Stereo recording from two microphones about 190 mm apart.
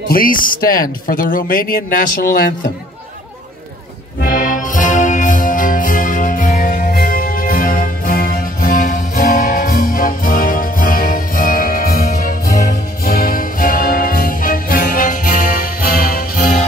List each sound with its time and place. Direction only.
0.1 s speech: 45° left (ahead or behind)
4.2 s music: 45° left (ahead or behind)